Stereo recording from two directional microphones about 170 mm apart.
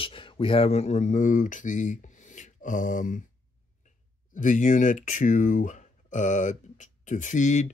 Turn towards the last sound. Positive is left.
turn(degrees=45)  # may be behind; listen again after turning